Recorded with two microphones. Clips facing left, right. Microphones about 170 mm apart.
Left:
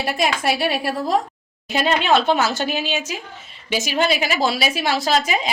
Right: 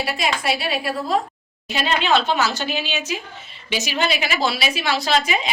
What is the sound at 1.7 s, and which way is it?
A woman's voice, 50° left (ahead or behind).